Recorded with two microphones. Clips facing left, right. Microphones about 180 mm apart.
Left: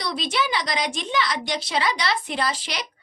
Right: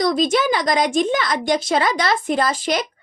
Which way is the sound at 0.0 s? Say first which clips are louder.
Right 9 dB; 45° right (ahead or behind).